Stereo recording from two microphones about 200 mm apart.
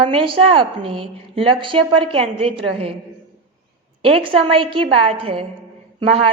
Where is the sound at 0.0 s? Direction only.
25° right (ahead or behind).